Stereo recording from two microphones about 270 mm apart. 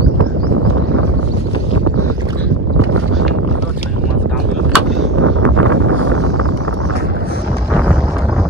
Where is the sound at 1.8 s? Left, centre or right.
Right.